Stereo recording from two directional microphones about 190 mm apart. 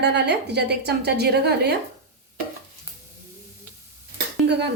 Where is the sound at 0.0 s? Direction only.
60° right (ahead or behind).